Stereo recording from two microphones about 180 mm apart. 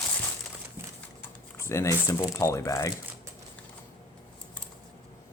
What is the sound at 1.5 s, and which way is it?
Speech, 15° left (ahead or behind).